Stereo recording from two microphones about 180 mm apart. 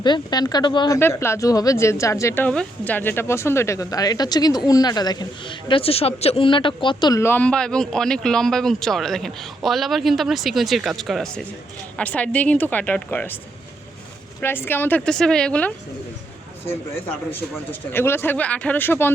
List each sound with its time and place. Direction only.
0.0 s speech: 25° left (ahead or behind)
0.9 s speech: 15° left (ahead or behind)
14.4 s speech: 10° left (ahead or behind)